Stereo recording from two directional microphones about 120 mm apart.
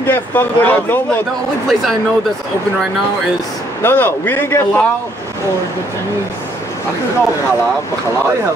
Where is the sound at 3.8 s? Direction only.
20° left (ahead or behind).